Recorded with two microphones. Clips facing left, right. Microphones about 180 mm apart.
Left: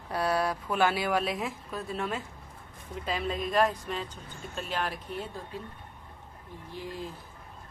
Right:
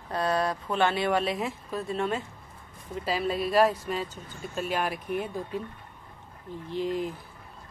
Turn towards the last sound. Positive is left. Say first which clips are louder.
# right 9 dB
turn(degrees=-20)  # may be behind; listen again after turning